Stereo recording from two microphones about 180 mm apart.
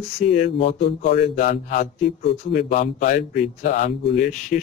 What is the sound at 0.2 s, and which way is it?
A man's voice, 40° left (ahead or behind).